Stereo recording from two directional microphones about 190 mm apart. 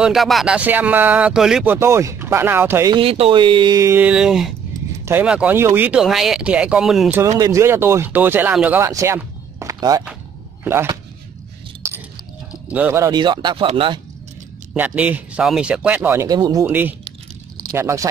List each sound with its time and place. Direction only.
0.0 s speech: centre (ahead or behind)
3.0 s speech: 30° right (ahead or behind); by 7.2 s centre (ahead or behind)
7.2 s speech: 20° right (ahead or behind)
12.6 s speech: 10° right (ahead or behind); by 14.0 s 25° right (ahead or behind)
14.7 s speech: 5° right (ahead or behind)